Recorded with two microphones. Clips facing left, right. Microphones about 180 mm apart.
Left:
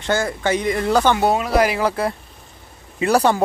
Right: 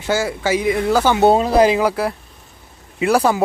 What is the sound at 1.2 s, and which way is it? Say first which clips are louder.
Speech: right 5 dB; 25° right (ahead or behind).